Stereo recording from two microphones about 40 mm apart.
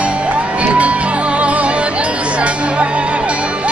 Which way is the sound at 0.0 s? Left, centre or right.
Right.